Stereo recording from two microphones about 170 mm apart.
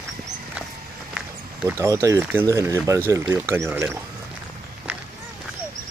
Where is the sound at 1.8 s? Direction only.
20° right (ahead or behind).